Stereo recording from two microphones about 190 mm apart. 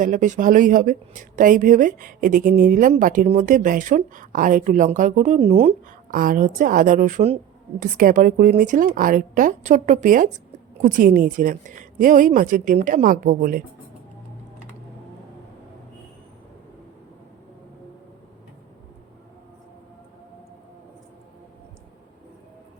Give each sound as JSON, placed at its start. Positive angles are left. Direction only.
{"t": 0.0, "sound": "speech", "side_deg": -40}
{"t": 6.1, "sound": "speech", "side_deg": -45}